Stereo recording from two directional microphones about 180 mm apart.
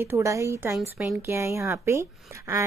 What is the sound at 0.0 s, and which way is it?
Speech, 15° right (ahead or behind).